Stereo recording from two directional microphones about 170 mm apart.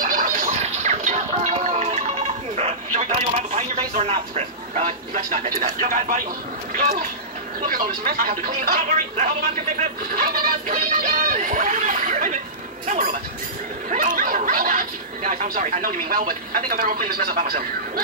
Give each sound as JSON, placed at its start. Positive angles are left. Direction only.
{"t": 0.0, "sound": "music", "side_deg": -55}
{"t": 2.5, "sound": "a sound", "side_deg": -45}
{"t": 6.7, "sound": "speech", "side_deg": -50}
{"t": 9.8, "sound": "speech", "side_deg": -55}